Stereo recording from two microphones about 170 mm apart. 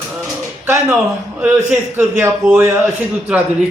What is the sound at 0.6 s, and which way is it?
A man's voice, 15° right (ahead or behind).